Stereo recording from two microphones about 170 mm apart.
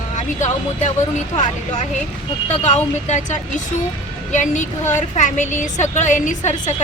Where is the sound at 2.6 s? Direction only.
45° left (ahead or behind).